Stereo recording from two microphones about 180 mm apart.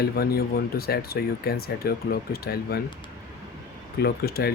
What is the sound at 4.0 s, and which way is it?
Speech, 60° left (ahead or behind).